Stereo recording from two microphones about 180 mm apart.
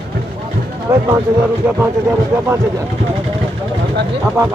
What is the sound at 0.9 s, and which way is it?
Speech, 15° right (ahead or behind).